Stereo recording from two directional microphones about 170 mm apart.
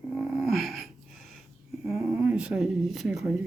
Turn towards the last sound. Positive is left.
turn(degrees=-5)  # may be behind; listen again after turning